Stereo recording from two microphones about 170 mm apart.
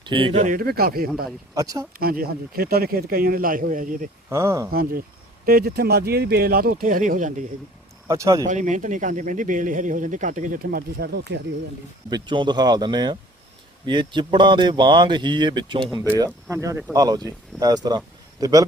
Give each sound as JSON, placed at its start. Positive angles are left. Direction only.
{"t": 0.0, "sound": "speech", "side_deg": -30}
{"t": 0.4, "sound": "a man's voice", "side_deg": -60}
{"t": 1.5, "sound": "speech", "side_deg": -20}
{"t": 2.0, "sound": "a man's voice", "side_deg": -60}
{"t": 4.3, "sound": "speech", "side_deg": -15}
{"t": 4.7, "sound": "a man's voice", "side_deg": -60}
{"t": 8.0, "sound": "speech", "side_deg": -20}
{"t": 8.4, "sound": "speech", "side_deg": -45}
{"t": 12.1, "sound": "speech", "side_deg": -30}